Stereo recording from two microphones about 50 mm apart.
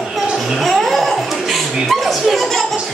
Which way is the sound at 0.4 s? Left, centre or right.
Centre.